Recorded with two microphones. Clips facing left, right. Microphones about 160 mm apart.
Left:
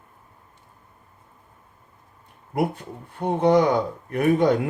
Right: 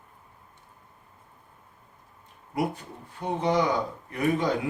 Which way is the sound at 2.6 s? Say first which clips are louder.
Left 4 dB; 60° left (ahead or behind).